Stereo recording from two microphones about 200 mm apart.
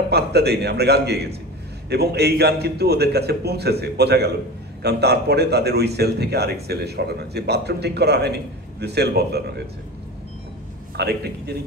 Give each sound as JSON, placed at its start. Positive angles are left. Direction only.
{"t": 0.1, "sound": "a man's voice", "side_deg": -55}
{"t": 11.0, "sound": "a man's voice", "side_deg": -55}